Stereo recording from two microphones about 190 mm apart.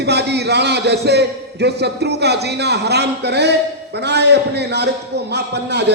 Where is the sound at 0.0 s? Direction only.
60° right (ahead or behind).